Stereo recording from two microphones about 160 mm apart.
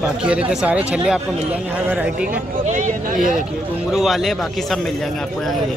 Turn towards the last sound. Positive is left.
turn(degrees=0)  # may be behind; listen again after turning